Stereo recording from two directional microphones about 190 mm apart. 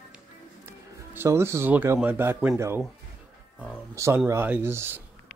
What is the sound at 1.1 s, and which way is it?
A man's voice, 15° right (ahead or behind).